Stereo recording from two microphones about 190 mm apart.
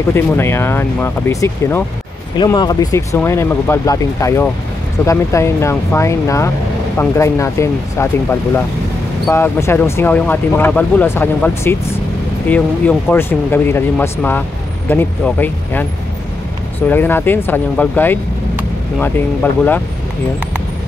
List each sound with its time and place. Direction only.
0.1 s speech: 15° left (ahead or behind)
16.9 s speech: 10° left (ahead or behind)